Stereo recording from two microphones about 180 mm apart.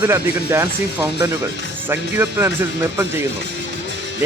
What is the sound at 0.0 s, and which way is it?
Speech, 15° right (ahead or behind).